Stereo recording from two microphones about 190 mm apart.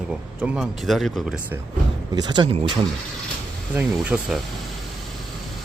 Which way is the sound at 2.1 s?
20° right (ahead or behind).